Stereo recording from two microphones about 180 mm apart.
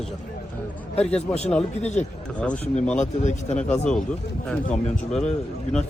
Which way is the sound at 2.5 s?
40° left (ahead or behind).